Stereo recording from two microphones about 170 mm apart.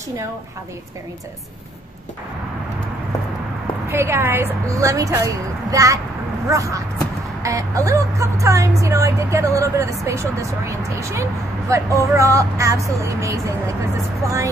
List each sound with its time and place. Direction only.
3.9 s a woman's voice: 15° right (ahead or behind)